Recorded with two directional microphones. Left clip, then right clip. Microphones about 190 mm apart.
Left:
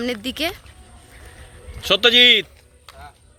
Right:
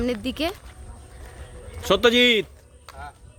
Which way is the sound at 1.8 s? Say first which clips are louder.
Left 4 dB; 45° right (ahead or behind).